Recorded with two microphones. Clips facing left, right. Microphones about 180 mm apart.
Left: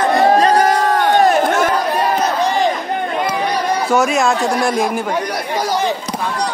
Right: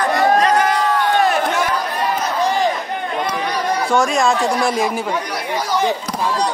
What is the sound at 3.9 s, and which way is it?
Speech, 5° left (ahead or behind).